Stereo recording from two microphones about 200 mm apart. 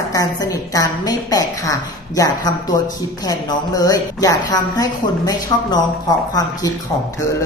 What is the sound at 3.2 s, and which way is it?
A woman's voice, 20° left (ahead or behind).